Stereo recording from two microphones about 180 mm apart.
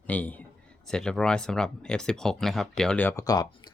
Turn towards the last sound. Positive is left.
turn(degrees=20)  # may be behind; listen again after turning